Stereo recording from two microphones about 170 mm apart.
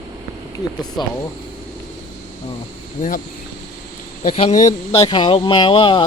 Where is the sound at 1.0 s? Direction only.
25° left (ahead or behind).